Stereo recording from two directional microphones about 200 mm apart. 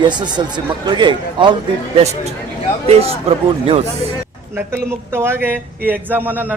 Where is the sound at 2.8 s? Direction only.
30° right (ahead or behind).